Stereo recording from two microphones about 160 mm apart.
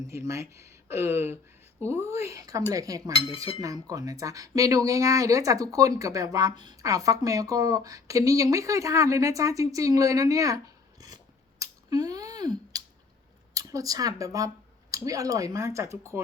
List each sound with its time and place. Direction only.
0.1 s speech: 15° right (ahead or behind)
3.1 s speech: 35° left (ahead or behind)
3.6 s speech: 20° right (ahead or behind)
11.6 s a sound: 25° right (ahead or behind)
13.5 s speech: 20° right (ahead or behind)